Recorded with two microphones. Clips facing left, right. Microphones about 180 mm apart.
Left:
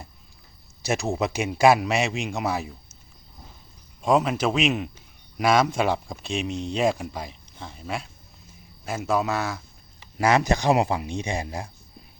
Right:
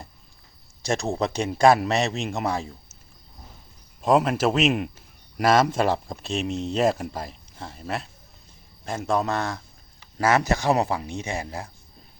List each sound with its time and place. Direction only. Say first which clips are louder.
0.9 s speech: even; centre (ahead or behind)
4.0 s speech: right 1 dB; centre (ahead or behind)
10.0 s speech: even; 15° left (ahead or behind)